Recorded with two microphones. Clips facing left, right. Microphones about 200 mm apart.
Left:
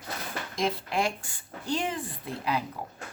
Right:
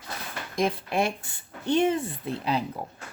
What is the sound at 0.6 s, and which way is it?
A woman's voice, 20° right (ahead or behind).